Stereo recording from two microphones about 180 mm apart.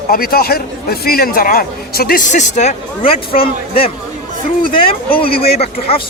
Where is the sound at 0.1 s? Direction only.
55° left (ahead or behind); by 3.9 s 30° left (ahead or behind).